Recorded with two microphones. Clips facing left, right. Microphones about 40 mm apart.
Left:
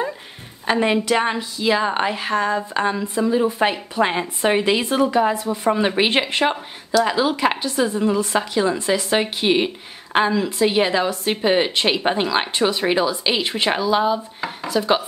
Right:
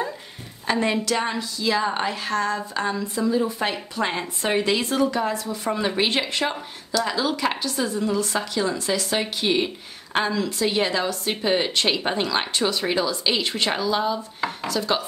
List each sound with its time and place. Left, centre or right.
0.7 s a woman's voice: left